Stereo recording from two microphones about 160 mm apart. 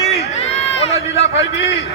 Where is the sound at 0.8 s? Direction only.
40° left (ahead or behind).